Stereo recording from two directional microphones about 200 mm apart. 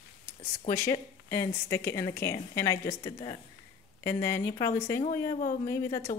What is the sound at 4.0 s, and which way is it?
Speech, 15° left (ahead or behind).